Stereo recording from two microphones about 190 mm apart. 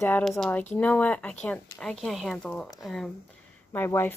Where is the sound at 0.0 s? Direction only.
10° left (ahead or behind).